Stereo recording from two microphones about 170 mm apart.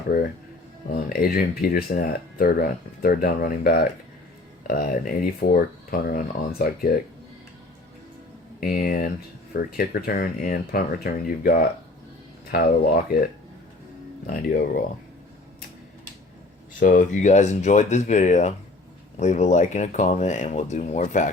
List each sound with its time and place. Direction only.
0.1 s speech: 60° left (ahead or behind)
8.6 s speech: 60° left (ahead or behind)
14.3 s speech: 50° left (ahead or behind)
16.8 s speech: 50° left (ahead or behind)